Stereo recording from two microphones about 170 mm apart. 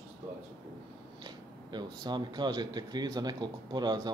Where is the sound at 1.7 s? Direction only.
25° right (ahead or behind).